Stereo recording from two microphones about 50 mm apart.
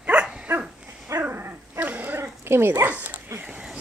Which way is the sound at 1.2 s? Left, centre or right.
Right.